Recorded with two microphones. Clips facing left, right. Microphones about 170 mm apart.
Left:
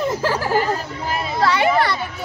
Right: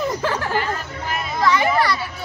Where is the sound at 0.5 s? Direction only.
35° left (ahead or behind).